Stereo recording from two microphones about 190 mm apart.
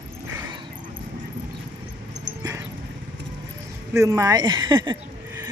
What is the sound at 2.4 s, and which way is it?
Dog, 15° right (ahead or behind).